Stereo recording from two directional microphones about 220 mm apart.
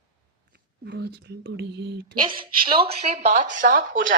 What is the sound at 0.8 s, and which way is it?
Speech, 50° right (ahead or behind).